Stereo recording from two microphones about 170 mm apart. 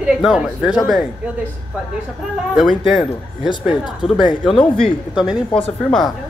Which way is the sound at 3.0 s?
30° left (ahead or behind).